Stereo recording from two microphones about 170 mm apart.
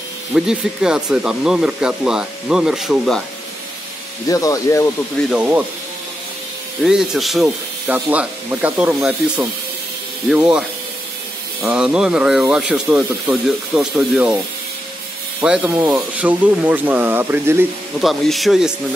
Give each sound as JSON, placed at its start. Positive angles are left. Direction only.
{"t": 0.3, "sound": "speech", "side_deg": -5}
{"t": 4.3, "sound": "speech", "side_deg": 20}
{"t": 5.3, "sound": "speech", "side_deg": -10}
{"t": 6.8, "sound": "speech", "side_deg": -5}
{"t": 10.3, "sound": "speech", "side_deg": -5}
{"t": 11.6, "sound": "speech", "side_deg": -5}
{"t": 15.4, "sound": "speech", "side_deg": -5}
{"t": 18.0, "sound": "speech", "side_deg": 0}